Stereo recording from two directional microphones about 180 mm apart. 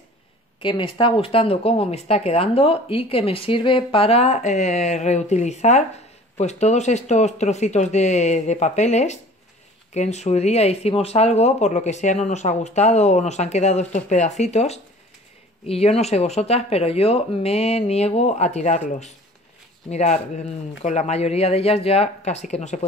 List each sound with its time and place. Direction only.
0.6 s speech: 25° left (ahead or behind)